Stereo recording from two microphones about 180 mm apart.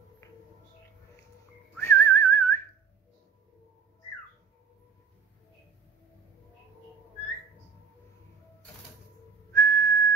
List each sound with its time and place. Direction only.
0.2 s a sound: 20° left (ahead or behind)
1.8 s whistling: 10° left (ahead or behind)
9.5 s whistling: 15° left (ahead or behind)